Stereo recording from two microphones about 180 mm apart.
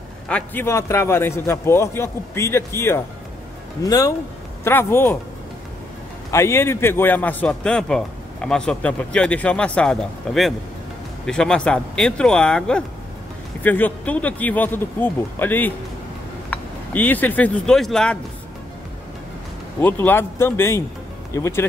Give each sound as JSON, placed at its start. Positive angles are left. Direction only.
{"t": 0.3, "sound": "a man's voice", "side_deg": 10}
{"t": 6.3, "sound": "a man's voice", "side_deg": 15}
{"t": 19.8, "sound": "a man's voice", "side_deg": 10}